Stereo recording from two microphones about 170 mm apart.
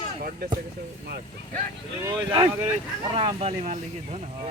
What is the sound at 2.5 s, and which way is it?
Speech, 10° right (ahead or behind).